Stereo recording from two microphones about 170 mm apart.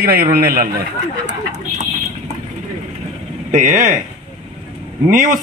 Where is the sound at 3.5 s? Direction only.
50° right (ahead or behind).